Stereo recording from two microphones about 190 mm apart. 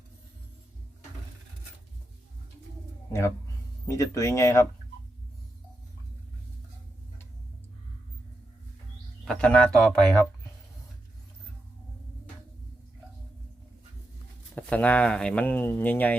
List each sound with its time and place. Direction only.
3.1 s speech: 15° left (ahead or behind)
9.2 s speech: 5° left (ahead or behind)
14.5 s speech: 5° left (ahead or behind)